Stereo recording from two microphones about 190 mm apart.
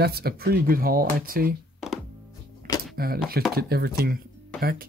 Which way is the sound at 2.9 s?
55° right (ahead or behind).